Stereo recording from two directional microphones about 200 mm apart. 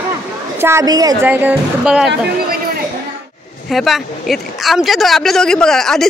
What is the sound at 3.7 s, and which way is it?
A man's voice, centre (ahead or behind).